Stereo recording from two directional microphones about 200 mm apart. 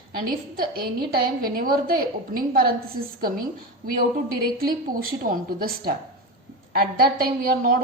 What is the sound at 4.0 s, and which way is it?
A woman's voice, 45° right (ahead or behind).